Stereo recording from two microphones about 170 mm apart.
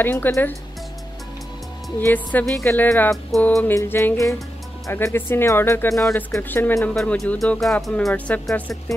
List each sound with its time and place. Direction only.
0.0 s speech: 10° left (ahead or behind)
2.0 s speech: 10° left (ahead or behind)
3.3 s speech: centre (ahead or behind)
5.9 s speech: centre (ahead or behind)
6.3 s speech: 15° left (ahead or behind)